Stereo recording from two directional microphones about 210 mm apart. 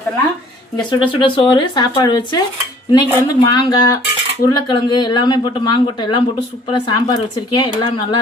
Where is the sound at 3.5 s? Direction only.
20° left (ahead or behind).